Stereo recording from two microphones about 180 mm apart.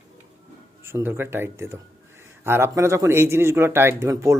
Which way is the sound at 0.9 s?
15° right (ahead or behind).